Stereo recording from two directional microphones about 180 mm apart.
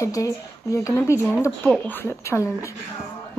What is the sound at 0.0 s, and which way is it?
Speech, 20° left (ahead or behind).